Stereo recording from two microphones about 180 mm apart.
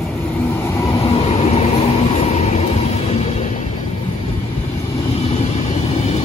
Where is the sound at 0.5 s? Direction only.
15° left (ahead or behind).